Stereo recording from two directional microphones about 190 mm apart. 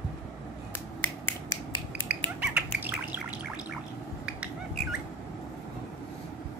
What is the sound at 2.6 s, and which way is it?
Bird, 10° right (ahead or behind).